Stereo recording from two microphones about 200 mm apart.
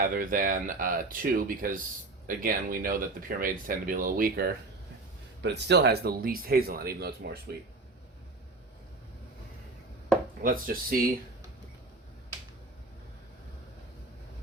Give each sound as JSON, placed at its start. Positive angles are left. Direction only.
{"t": 0.0, "sound": "speech", "side_deg": -45}
{"t": 5.4, "sound": "speech", "side_deg": -60}
{"t": 10.4, "sound": "speech", "side_deg": -45}